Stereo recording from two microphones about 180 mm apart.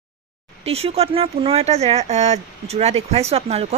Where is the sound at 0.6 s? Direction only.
35° right (ahead or behind).